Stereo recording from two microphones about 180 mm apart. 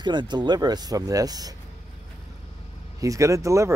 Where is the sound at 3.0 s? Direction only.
20° right (ahead or behind).